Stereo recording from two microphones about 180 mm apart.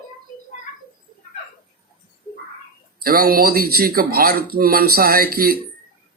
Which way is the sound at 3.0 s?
55° right (ahead or behind).